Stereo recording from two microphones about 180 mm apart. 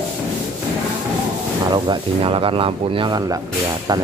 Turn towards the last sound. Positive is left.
turn(degrees=-20)  # may be behind; listen again after turning